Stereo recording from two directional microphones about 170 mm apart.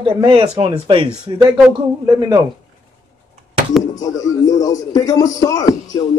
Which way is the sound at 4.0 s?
20° left (ahead or behind).